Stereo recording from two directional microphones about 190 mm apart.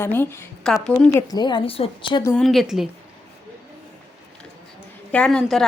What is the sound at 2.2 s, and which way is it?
Speech, 5° left (ahead or behind).